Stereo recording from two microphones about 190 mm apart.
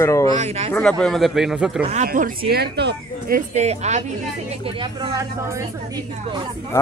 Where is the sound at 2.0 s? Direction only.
45° right (ahead or behind).